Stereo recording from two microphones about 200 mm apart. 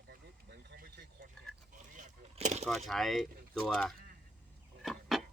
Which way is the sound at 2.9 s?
Centre (ahead or behind).